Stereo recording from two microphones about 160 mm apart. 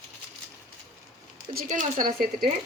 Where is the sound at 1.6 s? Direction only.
55° right (ahead or behind).